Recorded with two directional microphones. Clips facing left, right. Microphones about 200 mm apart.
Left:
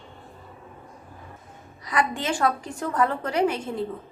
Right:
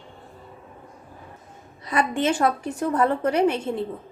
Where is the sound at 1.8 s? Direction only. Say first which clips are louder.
Right 3 dB; 25° right (ahead or behind).